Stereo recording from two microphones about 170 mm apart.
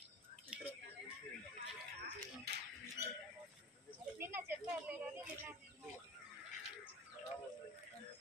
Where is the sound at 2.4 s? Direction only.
75° right (ahead or behind).